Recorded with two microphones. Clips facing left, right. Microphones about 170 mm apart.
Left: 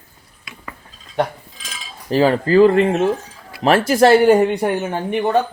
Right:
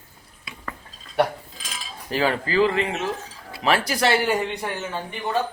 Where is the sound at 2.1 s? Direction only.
35° left (ahead or behind); by 5.3 s 60° left (ahead or behind).